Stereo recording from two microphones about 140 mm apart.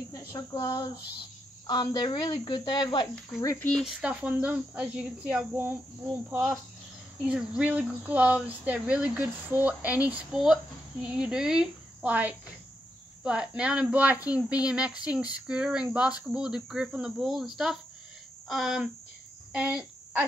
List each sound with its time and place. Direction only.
0.1 s speech: 25° left (ahead or behind)
3.3 s speech: 15° left (ahead or behind)
3.8 s speech: 5° right (ahead or behind)
7.2 s speech: 5° right (ahead or behind)
19.5 s cricket: 5° right (ahead or behind)